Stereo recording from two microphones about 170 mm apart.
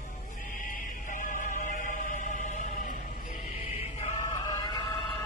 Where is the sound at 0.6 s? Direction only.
50° left (ahead or behind).